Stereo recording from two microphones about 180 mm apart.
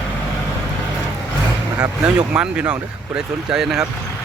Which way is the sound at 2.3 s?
5° right (ahead or behind).